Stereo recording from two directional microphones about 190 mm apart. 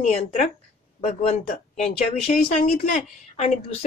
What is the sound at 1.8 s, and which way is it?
Speech, 35° left (ahead or behind).